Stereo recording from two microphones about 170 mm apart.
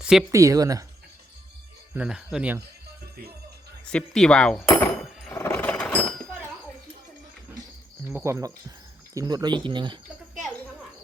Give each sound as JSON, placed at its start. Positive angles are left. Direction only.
{"t": 0.0, "sound": "speech", "side_deg": -5}
{"t": 0.3, "sound": "speech", "side_deg": -20}
{"t": 1.9, "sound": "speech", "side_deg": -5}
{"t": 3.9, "sound": "speech", "side_deg": 5}
{"t": 5.3, "sound": "a sound", "side_deg": 15}
{"t": 8.0, "sound": "speech", "side_deg": -15}